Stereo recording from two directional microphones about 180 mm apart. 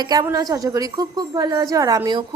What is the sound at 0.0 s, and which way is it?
A woman's voice, 20° right (ahead or behind).